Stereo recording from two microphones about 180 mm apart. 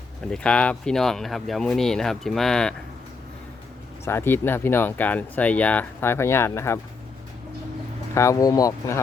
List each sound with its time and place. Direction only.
0.3 s speech: 5° left (ahead or behind)
4.0 s speech: 15° left (ahead or behind)
8.1 s speech: 15° left (ahead or behind)